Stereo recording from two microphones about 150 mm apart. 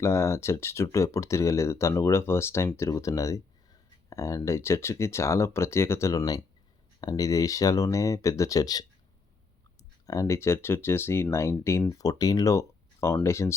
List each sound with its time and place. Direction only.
0.0 s speech: 20° left (ahead or behind)
10.1 s speech: 20° left (ahead or behind)